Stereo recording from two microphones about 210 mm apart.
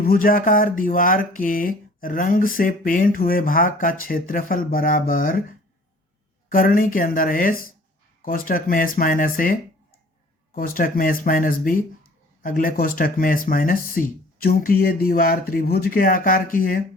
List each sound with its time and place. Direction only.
0.0 s speech: 45° left (ahead or behind)